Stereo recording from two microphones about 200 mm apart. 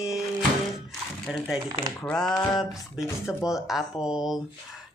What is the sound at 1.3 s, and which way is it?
Speech, 5° right (ahead or behind).